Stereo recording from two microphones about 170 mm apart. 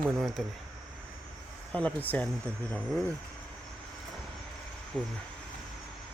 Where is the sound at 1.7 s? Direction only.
10° left (ahead or behind).